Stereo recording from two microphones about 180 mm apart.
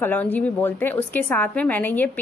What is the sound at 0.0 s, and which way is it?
A woman's voice, 10° left (ahead or behind).